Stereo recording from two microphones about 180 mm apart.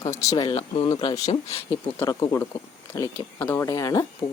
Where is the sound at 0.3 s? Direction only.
25° left (ahead or behind).